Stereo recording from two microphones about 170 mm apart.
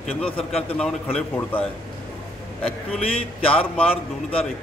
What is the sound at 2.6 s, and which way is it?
A man's voice, 35° left (ahead or behind).